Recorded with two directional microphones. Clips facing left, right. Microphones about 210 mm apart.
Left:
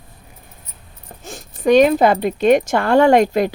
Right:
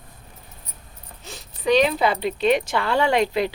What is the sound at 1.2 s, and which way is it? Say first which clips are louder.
Speech: left 9 dB; 50° left (ahead or behind).